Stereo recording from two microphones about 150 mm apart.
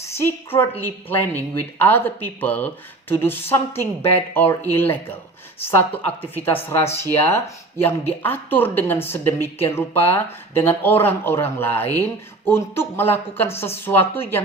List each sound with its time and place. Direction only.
0.0 s a woman's voice: 15° left (ahead or behind)